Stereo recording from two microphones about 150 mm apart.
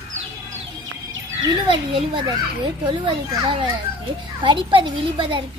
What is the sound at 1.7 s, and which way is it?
A child's voice, 35° right (ahead or behind).